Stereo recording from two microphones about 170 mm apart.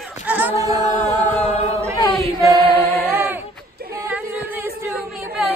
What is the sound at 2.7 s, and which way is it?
Music, 15° left (ahead or behind).